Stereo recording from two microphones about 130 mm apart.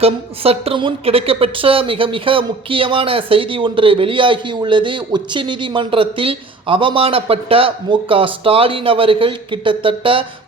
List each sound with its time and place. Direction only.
0.0 s a woman's voice: 50° right (ahead or behind)